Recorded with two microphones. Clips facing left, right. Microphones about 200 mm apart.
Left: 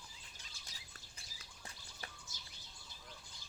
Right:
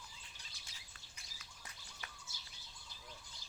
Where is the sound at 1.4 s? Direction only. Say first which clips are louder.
Left 3 dB; 35° left (ahead or behind).